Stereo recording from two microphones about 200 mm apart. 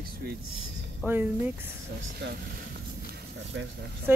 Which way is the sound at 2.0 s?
55° right (ahead or behind).